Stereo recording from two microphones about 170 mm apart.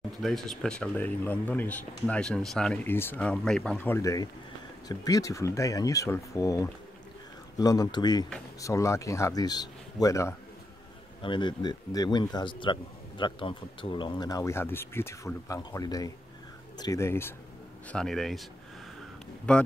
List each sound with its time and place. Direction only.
0.2 s speech: centre (ahead or behind)
17.9 s speech: centre (ahead or behind)
19.5 s speech: 5° left (ahead or behind)